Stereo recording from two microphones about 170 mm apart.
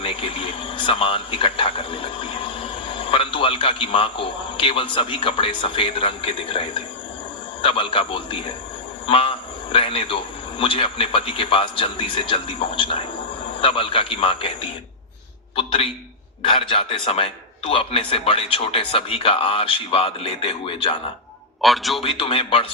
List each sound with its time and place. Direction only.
0.0 s a man's voice: 30° left (ahead or behind)
9.0 s a sound: 30° left (ahead or behind)
9.7 s a man's voice: 30° left (ahead or behind)
21.6 s a man's voice: centre (ahead or behind)
22.0 s a man's voice: 35° left (ahead or behind)